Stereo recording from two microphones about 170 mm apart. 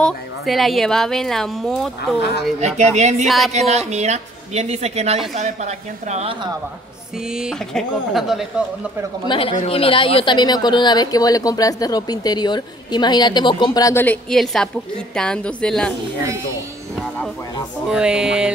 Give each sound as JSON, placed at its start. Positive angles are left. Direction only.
{"t": 0.0, "sound": "a woman's voice", "side_deg": 0}
{"t": 2.6, "sound": "speech", "side_deg": -45}
{"t": 3.3, "sound": "a woman's voice", "side_deg": 0}
{"t": 3.5, "sound": "a woman's voice", "side_deg": -40}
{"t": 7.2, "sound": "a woman's voice", "side_deg": -5}
{"t": 9.5, "sound": "a woman's voice", "side_deg": 40}
{"t": 14.0, "sound": "a woman's voice", "side_deg": 5}
{"t": 17.8, "sound": "a woman's voice", "side_deg": -5}